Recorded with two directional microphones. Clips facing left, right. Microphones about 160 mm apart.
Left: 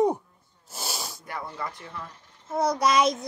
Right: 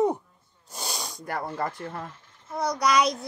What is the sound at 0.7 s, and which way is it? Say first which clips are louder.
Snort: even; 5° left (ahead or behind).